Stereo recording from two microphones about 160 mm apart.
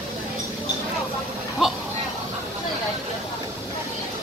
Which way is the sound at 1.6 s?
5° right (ahead or behind).